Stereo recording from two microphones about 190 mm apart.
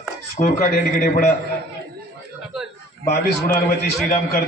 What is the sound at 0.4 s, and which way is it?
Speech, 45° left (ahead or behind).